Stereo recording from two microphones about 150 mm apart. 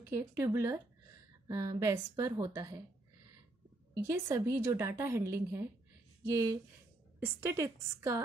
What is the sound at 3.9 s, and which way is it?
A woman's voice, 20° right (ahead or behind).